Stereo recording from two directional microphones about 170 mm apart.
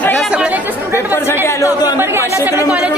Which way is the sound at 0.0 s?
Centre (ahead or behind).